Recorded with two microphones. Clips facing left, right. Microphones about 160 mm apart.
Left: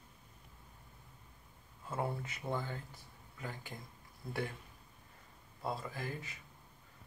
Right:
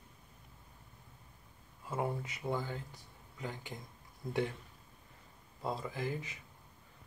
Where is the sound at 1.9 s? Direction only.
15° right (ahead or behind).